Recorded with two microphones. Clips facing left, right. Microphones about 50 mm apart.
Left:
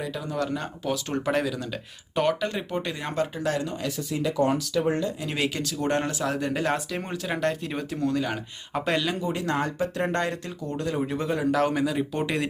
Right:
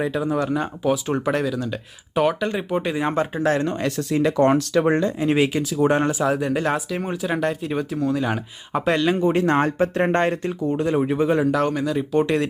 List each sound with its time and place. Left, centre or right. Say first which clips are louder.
0.2 s speech: right 7 dB; centre
3.4 s speech: right 7 dB; right
4.9 s speech: right 7 dB; right
5.7 s speech: right 9 dB; centre
9.0 s speech: right 9 dB; right
11.3 s speech: right 3 dB; centre